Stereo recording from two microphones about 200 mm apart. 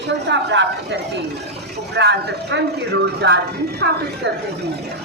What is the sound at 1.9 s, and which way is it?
A man's voice, 60° right (ahead or behind).